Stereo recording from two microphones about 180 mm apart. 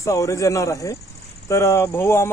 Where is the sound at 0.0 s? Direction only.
15° left (ahead or behind).